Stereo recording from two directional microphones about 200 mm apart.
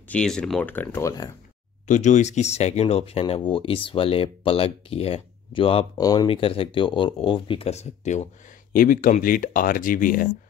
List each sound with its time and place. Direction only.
0.1 s speech: 5° left (ahead or behind)
1.9 s speech: 35° left (ahead or behind)